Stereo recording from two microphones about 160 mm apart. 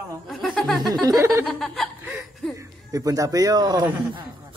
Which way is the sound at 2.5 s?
20° right (ahead or behind).